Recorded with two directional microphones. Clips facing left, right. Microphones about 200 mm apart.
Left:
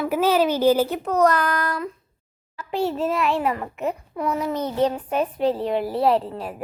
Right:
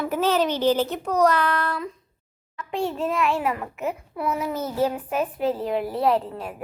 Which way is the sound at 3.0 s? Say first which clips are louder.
Left 1 dB; centre (ahead or behind).